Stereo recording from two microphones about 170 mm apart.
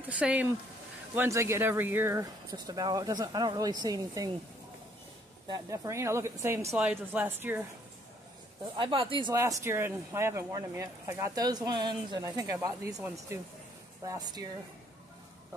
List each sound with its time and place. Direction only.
0.1 s speech: 10° right (ahead or behind)
5.5 s speech: 20° right (ahead or behind)
8.7 s speech: 30° right (ahead or behind)